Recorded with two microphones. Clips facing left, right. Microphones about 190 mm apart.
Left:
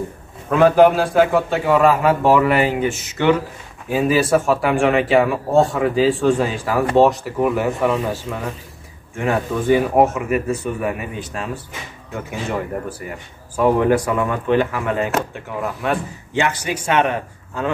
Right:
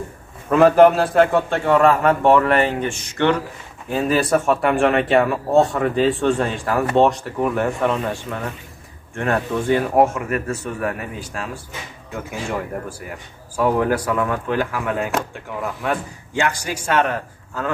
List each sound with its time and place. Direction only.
0.5 s a man's voice: centre (ahead or behind)